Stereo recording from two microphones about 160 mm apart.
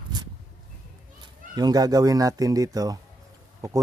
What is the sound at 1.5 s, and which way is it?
A man's voice, 25° right (ahead or behind).